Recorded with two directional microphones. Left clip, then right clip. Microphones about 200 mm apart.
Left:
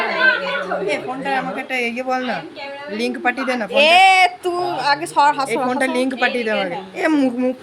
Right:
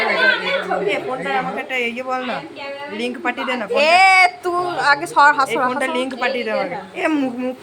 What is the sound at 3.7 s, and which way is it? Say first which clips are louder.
Speech: left 1 dB; 20° left (ahead or behind).